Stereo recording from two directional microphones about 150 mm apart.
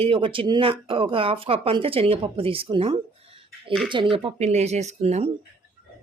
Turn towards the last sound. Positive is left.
turn(degrees=-45)  # may be behind; listen again after turning